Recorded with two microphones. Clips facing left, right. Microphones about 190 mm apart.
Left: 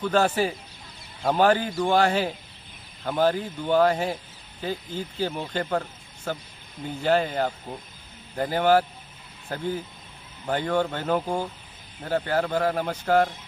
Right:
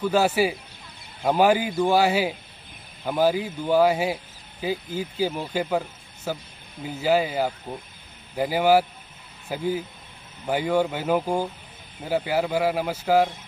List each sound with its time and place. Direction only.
0.0 s a man's voice: 10° right (ahead or behind)